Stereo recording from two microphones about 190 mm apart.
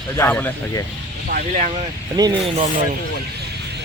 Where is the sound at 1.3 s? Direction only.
40° right (ahead or behind).